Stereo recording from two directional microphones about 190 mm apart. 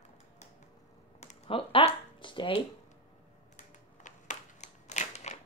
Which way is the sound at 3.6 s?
40° left (ahead or behind).